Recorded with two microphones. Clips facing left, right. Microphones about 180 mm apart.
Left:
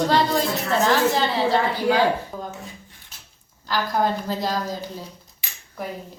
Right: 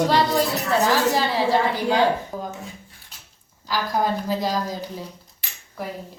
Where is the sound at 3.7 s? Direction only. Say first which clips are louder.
Left 1 dB; 10° right (ahead or behind).